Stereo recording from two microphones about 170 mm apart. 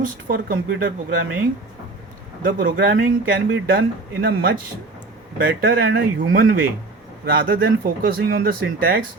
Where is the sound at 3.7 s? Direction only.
70° right (ahead or behind).